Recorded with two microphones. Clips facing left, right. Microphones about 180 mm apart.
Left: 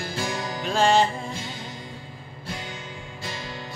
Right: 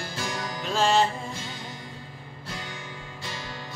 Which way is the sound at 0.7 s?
Centre (ahead or behind).